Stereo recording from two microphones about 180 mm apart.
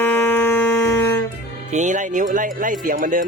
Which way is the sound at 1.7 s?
45° right (ahead or behind).